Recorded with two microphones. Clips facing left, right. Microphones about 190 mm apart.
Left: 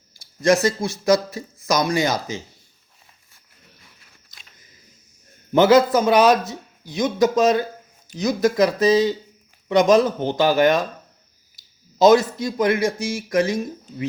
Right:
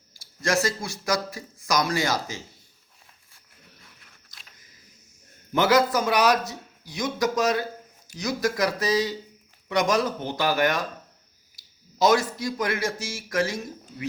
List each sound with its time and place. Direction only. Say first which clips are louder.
0.4 s speech: left 7 dB; 20° left (ahead or behind)
5.5 s speech: left 7 dB; 25° left (ahead or behind)